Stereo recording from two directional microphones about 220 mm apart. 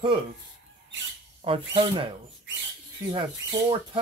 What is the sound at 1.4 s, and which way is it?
Speech, 25° right (ahead or behind).